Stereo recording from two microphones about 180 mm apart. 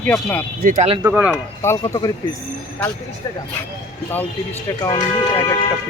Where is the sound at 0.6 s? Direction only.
45° right (ahead or behind).